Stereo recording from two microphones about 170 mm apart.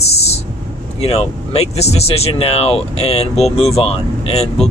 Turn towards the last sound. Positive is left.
turn(degrees=35)  # may be behind; listen again after turning